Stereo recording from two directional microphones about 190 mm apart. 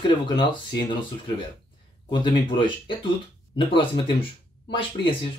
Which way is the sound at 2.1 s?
25° left (ahead or behind).